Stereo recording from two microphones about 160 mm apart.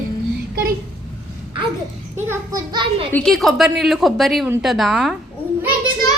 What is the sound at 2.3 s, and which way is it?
Speech, 25° right (ahead or behind).